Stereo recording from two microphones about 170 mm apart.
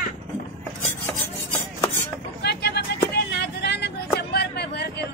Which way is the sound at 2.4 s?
75° left (ahead or behind).